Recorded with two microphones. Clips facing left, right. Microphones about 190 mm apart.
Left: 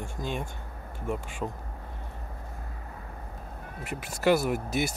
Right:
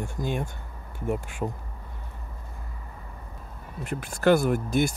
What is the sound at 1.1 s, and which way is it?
Speech, 55° right (ahead or behind).